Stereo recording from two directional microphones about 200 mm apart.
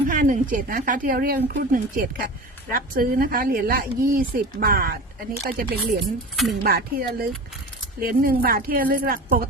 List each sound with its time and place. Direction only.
0.1 s speech: 40° right (ahead or behind)
6.3 s speech: centre (ahead or behind)
6.6 s speech: 50° right (ahead or behind)